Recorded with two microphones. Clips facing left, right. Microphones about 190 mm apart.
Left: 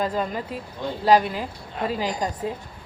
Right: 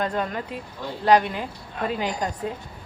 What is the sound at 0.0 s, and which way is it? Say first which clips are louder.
Speech: left 1 dB; 5° left (ahead or behind).